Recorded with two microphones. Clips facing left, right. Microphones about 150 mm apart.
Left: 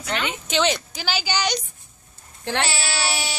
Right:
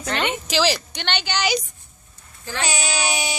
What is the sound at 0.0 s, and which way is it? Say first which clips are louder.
Speech: right 3 dB; 40° right (ahead or behind).